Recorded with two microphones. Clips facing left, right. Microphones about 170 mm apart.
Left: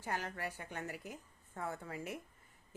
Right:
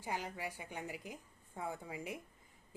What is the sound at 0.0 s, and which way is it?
Speech, 10° right (ahead or behind).